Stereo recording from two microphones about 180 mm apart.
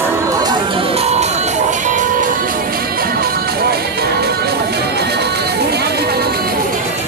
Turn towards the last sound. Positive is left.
turn(degrees=-60)  # may be behind; listen again after turning